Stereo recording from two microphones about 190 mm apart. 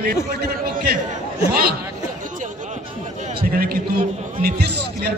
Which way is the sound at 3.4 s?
55° right (ahead or behind).